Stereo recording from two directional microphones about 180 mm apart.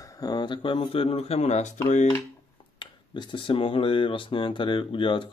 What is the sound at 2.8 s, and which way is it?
Speech, 25° left (ahead or behind).